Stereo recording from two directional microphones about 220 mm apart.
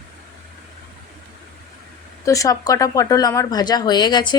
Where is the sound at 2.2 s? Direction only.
15° left (ahead or behind).